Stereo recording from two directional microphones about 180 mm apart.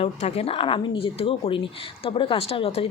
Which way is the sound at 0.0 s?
35° left (ahead or behind).